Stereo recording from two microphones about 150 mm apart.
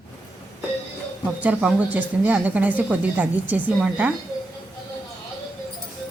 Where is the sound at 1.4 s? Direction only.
10° right (ahead or behind).